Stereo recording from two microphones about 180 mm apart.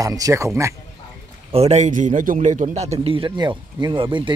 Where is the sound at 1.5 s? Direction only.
40° right (ahead or behind).